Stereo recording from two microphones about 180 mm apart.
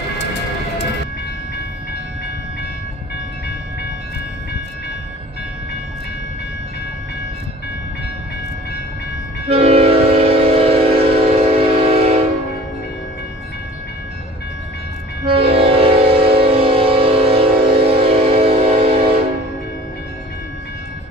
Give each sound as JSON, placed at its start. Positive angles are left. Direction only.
{"t": 9.5, "sound": "train", "side_deg": -35}
{"t": 15.2, "sound": "train", "side_deg": -30}